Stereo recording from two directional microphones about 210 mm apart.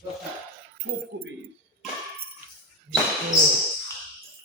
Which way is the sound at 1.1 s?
60° right (ahead or behind).